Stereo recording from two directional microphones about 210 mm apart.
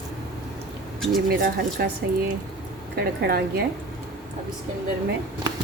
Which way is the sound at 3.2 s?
45° right (ahead or behind).